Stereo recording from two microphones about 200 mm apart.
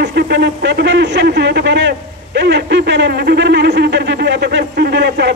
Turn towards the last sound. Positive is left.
turn(degrees=-55)  # may be behind; listen again after turning